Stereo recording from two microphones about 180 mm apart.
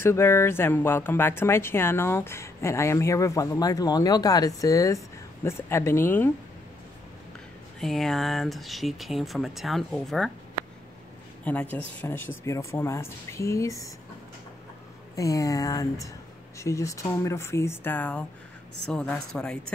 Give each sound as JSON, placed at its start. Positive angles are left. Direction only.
{"t": 0.0, "sound": "speech", "side_deg": 15}
{"t": 7.8, "sound": "speech", "side_deg": 0}
{"t": 11.4, "sound": "speech", "side_deg": 10}
{"t": 15.1, "sound": "speech", "side_deg": 20}